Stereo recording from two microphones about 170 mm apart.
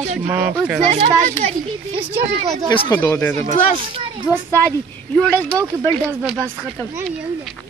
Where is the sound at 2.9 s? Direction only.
15° left (ahead or behind).